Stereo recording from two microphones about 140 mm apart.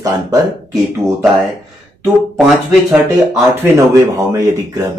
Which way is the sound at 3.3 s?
20° right (ahead or behind).